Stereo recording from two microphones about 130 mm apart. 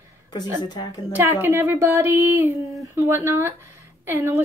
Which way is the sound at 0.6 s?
30° left (ahead or behind).